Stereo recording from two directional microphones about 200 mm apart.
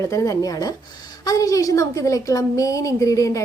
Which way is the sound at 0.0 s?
15° left (ahead or behind).